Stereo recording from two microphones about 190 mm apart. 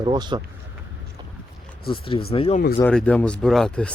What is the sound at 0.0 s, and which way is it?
Speech, 25° right (ahead or behind).